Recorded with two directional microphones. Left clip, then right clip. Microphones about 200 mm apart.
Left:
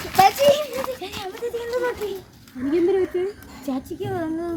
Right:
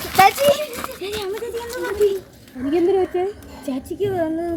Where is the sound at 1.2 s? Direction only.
5° left (ahead or behind).